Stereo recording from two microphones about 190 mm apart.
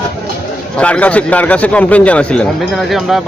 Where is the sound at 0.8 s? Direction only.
5° left (ahead or behind).